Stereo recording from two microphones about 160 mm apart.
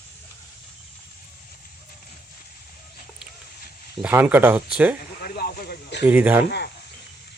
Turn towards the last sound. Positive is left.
turn(degrees=90)